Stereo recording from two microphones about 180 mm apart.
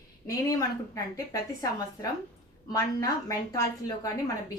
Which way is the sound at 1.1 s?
20° left (ahead or behind).